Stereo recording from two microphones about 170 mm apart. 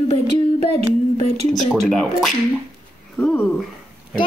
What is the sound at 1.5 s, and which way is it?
Speech, centre (ahead or behind).